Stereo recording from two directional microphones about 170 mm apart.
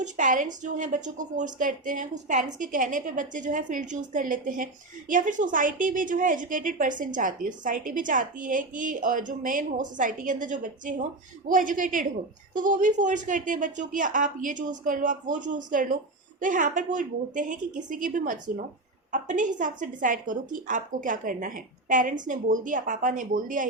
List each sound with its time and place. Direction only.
0.0 s a woman's voice: 50° right (ahead or behind)